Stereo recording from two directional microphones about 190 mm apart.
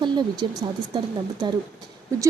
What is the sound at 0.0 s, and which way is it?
Speech, 25° right (ahead or behind).